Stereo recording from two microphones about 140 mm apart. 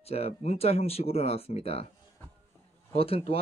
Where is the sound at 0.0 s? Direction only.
45° left (ahead or behind).